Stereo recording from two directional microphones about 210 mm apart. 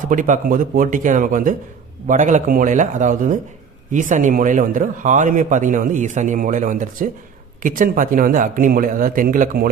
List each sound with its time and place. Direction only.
0.1 s speech: 40° right (ahead or behind)